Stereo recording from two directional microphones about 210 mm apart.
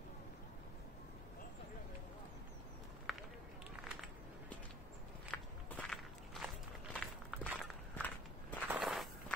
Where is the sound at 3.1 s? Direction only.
Centre (ahead or behind).